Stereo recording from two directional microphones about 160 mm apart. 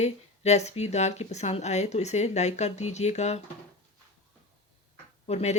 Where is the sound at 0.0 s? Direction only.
45° left (ahead or behind).